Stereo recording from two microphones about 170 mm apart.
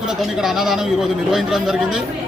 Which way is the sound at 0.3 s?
Centre (ahead or behind).